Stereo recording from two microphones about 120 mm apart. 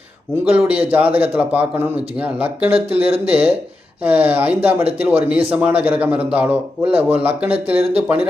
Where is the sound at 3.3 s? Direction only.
15° right (ahead or behind).